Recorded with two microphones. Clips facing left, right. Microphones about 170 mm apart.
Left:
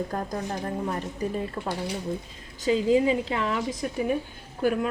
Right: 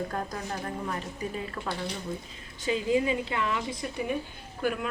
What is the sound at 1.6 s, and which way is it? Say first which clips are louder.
Speech: left 3 dB; 25° left (ahead or behind).